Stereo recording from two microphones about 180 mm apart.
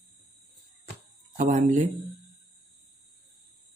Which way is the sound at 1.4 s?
45° right (ahead or behind).